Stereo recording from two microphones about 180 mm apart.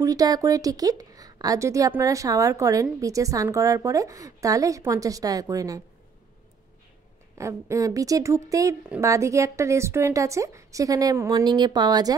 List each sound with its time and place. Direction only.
0.0 s a woman's voice: 20° right (ahead or behind)
7.3 s a woman's voice: 15° right (ahead or behind)
8.8 s a woman's voice: 5° right (ahead or behind)